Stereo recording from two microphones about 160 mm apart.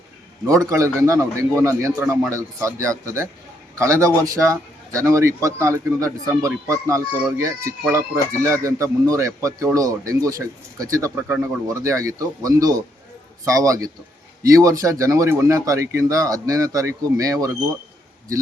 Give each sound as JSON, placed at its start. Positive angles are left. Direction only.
{"t": 0.4, "sound": "speech", "side_deg": -20}